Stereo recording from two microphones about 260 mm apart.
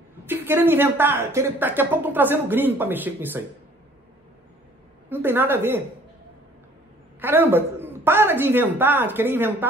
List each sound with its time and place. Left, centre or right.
0.3 s speech: centre
5.1 s speech: centre
7.2 s speech: centre